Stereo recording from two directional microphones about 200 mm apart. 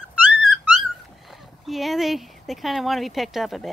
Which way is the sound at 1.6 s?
Centre (ahead or behind).